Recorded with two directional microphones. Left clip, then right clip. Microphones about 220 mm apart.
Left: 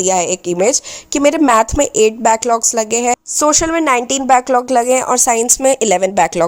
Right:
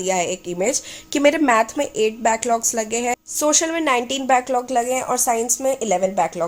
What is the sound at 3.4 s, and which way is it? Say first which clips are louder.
Speech: left 5 dB; 25° left (ahead or behind).